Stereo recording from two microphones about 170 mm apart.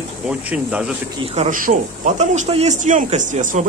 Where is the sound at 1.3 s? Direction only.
40° right (ahead or behind).